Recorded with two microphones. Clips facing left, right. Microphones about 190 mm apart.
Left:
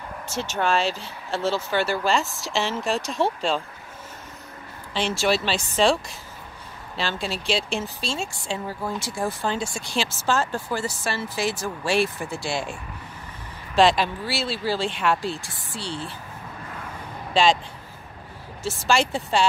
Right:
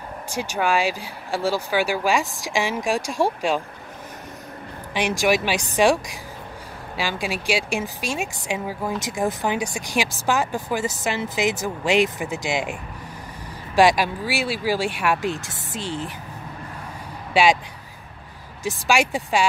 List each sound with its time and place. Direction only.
0.3 s speech: 15° right (ahead or behind)
4.9 s speech: 15° right (ahead or behind)
13.7 s speech: 10° right (ahead or behind)
17.3 s speech: 10° right (ahead or behind)
18.6 s speech: 15° right (ahead or behind)